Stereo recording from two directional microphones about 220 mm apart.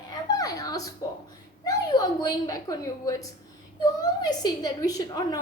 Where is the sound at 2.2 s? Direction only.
15° left (ahead or behind).